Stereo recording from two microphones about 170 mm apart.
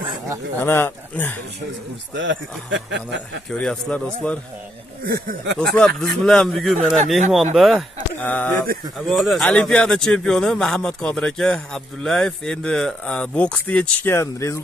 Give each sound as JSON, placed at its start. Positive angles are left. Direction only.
{"t": 0.6, "sound": "speech", "side_deg": 15}
{"t": 2.1, "sound": "a man's voice", "side_deg": -90}
{"t": 3.4, "sound": "speech", "side_deg": 5}
{"t": 5.0, "sound": "speech", "side_deg": -60}
{"t": 5.9, "sound": "speech", "side_deg": 5}